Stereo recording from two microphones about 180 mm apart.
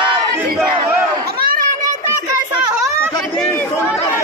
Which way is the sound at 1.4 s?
50° right (ahead or behind).